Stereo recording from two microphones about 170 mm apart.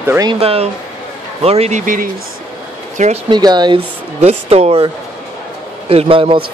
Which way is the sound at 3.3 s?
25° right (ahead or behind).